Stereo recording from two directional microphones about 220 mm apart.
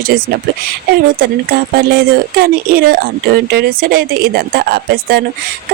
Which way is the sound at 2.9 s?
45° right (ahead or behind).